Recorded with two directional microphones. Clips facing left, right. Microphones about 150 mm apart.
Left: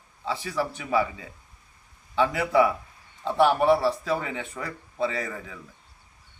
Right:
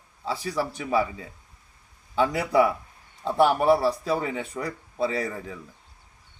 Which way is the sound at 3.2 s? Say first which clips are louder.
Even; 10° right (ahead or behind).